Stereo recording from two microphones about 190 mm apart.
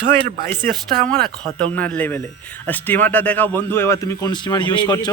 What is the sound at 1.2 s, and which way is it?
Speech, 5° left (ahead or behind).